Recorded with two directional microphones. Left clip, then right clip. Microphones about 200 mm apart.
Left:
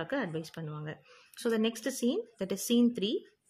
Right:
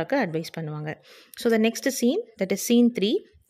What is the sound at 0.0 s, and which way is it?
A woman's voice, 30° right (ahead or behind).